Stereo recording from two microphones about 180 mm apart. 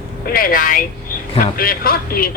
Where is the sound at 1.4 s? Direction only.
55° left (ahead or behind).